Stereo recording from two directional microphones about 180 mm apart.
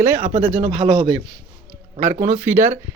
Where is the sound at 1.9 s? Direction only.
40° right (ahead or behind).